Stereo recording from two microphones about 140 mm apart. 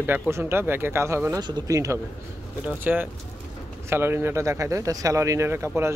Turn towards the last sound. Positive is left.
turn(degrees=-20)  # may be behind; listen again after turning